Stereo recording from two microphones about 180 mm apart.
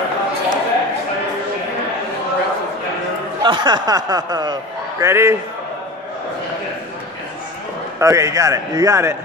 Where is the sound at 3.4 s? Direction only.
25° right (ahead or behind).